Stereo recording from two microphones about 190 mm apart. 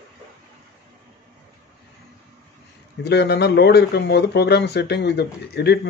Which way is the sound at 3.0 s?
60° left (ahead or behind).